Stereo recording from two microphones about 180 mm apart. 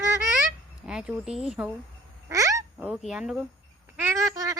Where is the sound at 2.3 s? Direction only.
20° right (ahead or behind).